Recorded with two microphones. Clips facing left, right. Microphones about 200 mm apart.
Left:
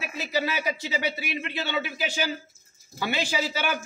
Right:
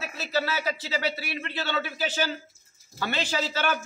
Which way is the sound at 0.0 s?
15° left (ahead or behind).